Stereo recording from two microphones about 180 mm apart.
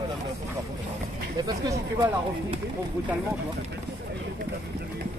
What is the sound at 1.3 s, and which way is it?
Speech, 20° right (ahead or behind).